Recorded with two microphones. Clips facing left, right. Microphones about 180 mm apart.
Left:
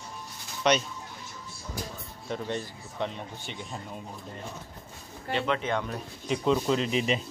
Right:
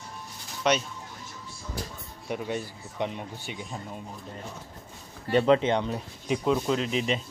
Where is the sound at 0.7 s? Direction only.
5° right (ahead or behind).